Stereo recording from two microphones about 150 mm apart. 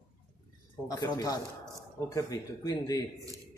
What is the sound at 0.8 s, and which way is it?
Speech, 25° left (ahead or behind).